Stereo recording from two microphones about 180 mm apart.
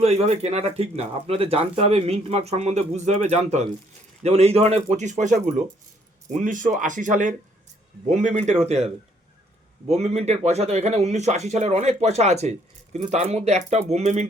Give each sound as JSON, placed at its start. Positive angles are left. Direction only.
{"t": 0.0, "sound": "speech", "side_deg": -35}
{"t": 9.9, "sound": "speech", "side_deg": -35}